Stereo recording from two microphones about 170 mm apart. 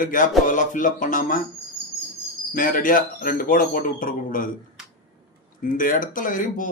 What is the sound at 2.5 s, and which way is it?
Speech, 55° left (ahead or behind).